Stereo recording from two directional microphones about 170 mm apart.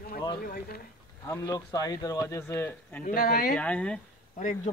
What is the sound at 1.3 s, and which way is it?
Speech, 20° left (ahead or behind).